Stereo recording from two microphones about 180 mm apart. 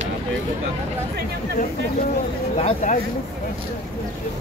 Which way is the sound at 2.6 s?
45° left (ahead or behind).